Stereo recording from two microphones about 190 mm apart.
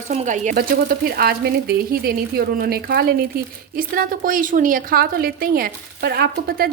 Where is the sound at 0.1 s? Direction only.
35° right (ahead or behind).